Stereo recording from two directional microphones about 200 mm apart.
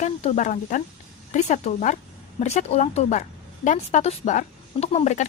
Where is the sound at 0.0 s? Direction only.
35° left (ahead or behind).